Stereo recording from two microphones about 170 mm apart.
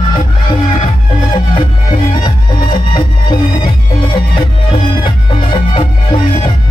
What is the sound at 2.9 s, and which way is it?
Music, 25° left (ahead or behind).